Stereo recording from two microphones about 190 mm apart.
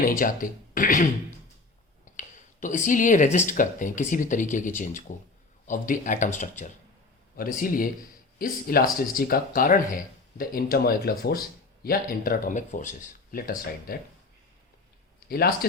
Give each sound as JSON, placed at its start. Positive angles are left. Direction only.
{"t": 0.0, "sound": "speech", "side_deg": 45}
{"t": 2.1, "sound": "speech", "side_deg": 40}
{"t": 15.3, "sound": "speech", "side_deg": 55}